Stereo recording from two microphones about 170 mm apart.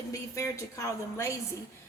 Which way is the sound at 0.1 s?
15° left (ahead or behind).